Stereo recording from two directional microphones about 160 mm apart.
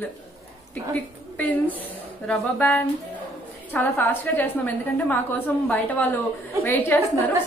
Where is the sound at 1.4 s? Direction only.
10° left (ahead or behind).